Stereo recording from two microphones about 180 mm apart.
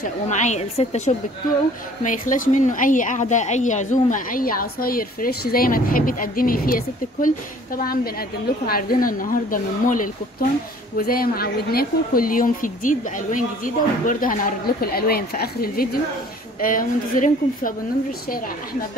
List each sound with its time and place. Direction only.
0.3 s a woman's voice: 40° left (ahead or behind)